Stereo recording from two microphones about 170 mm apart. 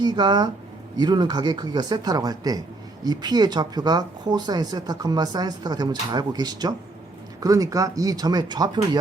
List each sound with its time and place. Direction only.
0.0 s speech: 25° right (ahead or behind)